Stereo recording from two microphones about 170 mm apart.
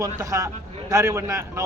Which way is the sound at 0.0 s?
20° right (ahead or behind).